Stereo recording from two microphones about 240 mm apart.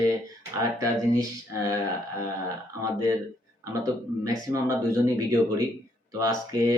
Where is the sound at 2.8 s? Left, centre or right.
Centre.